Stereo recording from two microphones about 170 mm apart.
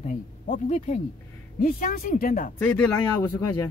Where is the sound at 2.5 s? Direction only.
5° left (ahead or behind).